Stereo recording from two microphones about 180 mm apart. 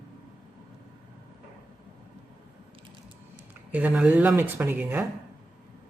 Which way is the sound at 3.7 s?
5° right (ahead or behind).